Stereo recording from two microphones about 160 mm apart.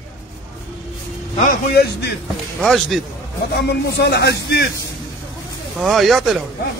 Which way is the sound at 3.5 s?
90° left.